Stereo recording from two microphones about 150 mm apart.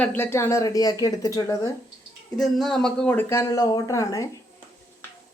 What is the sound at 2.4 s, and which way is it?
Speech, centre (ahead or behind).